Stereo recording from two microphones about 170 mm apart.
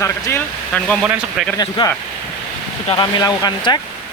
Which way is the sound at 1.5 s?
25° left (ahead or behind).